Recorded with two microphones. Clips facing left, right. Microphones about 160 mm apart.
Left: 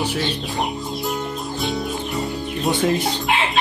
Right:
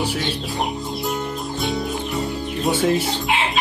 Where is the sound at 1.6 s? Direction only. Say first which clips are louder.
Even; centre (ahead or behind).